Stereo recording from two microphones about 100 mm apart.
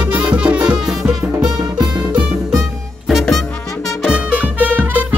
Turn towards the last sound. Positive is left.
turn(degrees=-15)  # may be behind; listen again after turning